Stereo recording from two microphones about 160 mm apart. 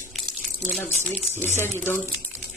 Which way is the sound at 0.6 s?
5° left (ahead or behind).